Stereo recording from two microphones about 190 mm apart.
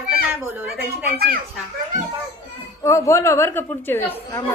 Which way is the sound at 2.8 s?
15° left (ahead or behind).